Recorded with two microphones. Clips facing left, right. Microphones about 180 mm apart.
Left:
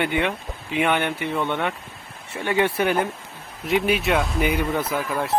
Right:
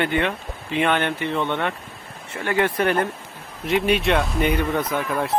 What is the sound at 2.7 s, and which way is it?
Speech, centre (ahead or behind).